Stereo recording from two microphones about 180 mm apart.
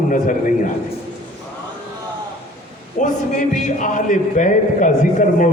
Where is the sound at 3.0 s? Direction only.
45° left (ahead or behind).